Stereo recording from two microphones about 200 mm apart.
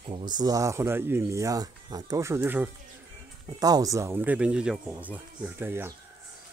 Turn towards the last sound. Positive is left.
turn(degrees=-10)  # may be behind; listen again after turning